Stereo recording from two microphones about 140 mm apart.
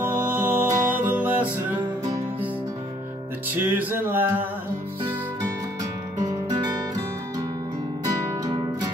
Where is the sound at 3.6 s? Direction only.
10° right (ahead or behind).